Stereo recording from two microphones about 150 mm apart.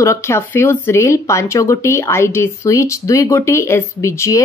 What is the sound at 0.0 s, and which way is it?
A woman's voice, 20° left (ahead or behind).